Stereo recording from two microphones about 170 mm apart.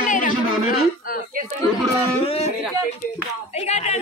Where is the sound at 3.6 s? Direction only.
40° left (ahead or behind).